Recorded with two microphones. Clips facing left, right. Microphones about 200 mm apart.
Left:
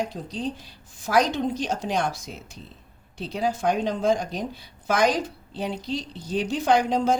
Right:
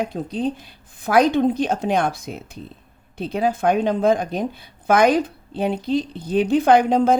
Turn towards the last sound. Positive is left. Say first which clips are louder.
# right 6 dB
turn(degrees=-55)  # may be behind; listen again after turning